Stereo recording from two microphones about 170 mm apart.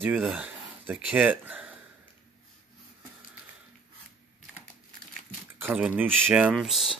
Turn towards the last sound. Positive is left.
turn(degrees=0)  # may be behind; listen again after turning